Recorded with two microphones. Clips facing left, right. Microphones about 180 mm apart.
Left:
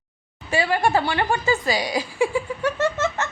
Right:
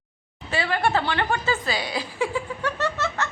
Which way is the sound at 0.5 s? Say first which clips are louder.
Left 3 dB; 15° left (ahead or behind).